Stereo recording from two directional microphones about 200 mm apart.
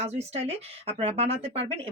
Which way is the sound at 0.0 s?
30° right (ahead or behind).